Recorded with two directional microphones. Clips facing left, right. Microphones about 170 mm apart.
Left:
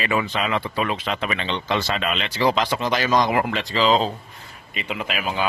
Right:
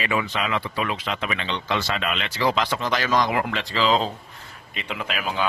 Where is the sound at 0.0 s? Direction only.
35° left (ahead or behind); by 4.1 s 20° left (ahead or behind).